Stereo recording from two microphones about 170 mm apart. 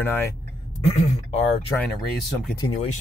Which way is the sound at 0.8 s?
35° left (ahead or behind).